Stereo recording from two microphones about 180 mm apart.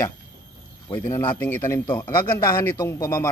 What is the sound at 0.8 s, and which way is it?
Speech, 15° left (ahead or behind).